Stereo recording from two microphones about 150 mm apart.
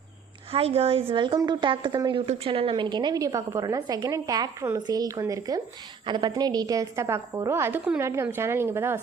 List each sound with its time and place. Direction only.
0.5 s a woman's voice: 40° right (ahead or behind); by 9.0 s 15° right (ahead or behind)